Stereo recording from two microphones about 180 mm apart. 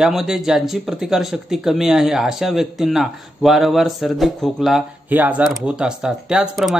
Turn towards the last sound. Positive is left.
turn(degrees=0)  # may be behind; listen again after turning